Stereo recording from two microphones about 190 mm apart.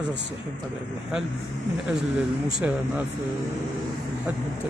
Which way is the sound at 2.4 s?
5° right (ahead or behind).